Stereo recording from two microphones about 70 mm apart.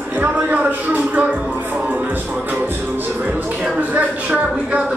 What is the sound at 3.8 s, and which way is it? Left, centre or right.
Speech, right.